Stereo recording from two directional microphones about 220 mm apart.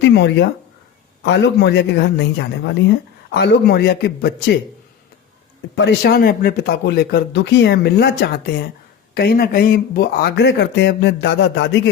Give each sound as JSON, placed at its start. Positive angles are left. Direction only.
{"t": 0.0, "sound": "a woman's voice", "side_deg": 55}
{"t": 5.7, "sound": "a woman's voice", "side_deg": 50}